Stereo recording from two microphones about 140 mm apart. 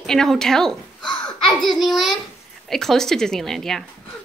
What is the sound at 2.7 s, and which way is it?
Speech, centre (ahead or behind).